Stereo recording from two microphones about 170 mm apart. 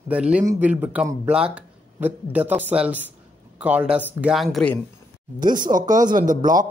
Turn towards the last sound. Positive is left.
turn(degrees=-50)  # may be behind; listen again after turning